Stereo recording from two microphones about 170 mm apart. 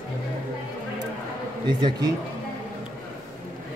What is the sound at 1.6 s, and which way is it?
Speech, 25° right (ahead or behind).